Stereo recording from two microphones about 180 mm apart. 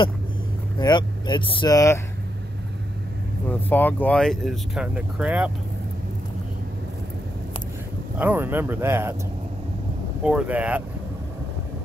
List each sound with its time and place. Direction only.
0.7 s speech: 25° left (ahead or behind)
3.6 s speech: 10° left (ahead or behind); by 5.5 s 5° right (ahead or behind)
8.2 s speech: 10° right (ahead or behind)
10.2 s speech: 5° right (ahead or behind)